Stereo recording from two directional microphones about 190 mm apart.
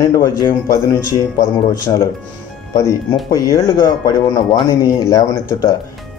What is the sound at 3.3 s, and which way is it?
Speech, 15° left (ahead or behind).